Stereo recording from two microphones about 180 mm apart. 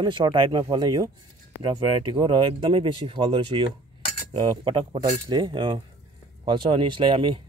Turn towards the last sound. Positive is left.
turn(degrees=-25)  # may be behind; listen again after turning